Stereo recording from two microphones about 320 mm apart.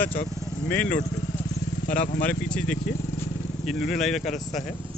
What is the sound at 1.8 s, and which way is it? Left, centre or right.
Speech, left.